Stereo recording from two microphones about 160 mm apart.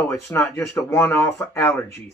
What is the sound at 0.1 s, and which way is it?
Speech, 15° left (ahead or behind).